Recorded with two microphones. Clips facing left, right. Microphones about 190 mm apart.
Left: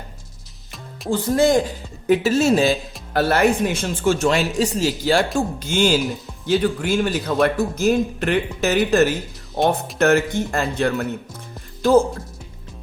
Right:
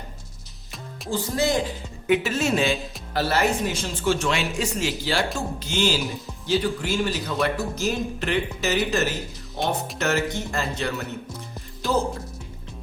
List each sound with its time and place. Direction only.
1.1 s speech: 50° left (ahead or behind)
2.0 s speech: 35° left (ahead or behind)
3.1 s speech: 55° left (ahead or behind)